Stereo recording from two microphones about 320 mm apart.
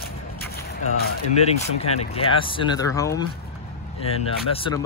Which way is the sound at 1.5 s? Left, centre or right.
Centre.